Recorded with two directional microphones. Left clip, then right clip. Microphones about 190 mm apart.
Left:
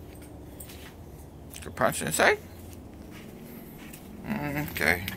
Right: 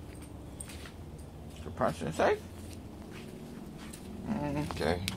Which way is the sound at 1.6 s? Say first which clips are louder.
Left 5 dB; 20° left (ahead or behind).